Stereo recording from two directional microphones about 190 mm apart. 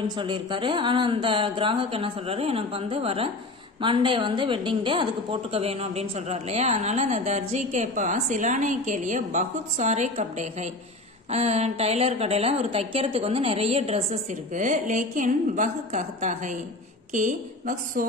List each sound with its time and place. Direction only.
0.0 s a woman's voice: 25° right (ahead or behind); by 18.0 s 45° right (ahead or behind)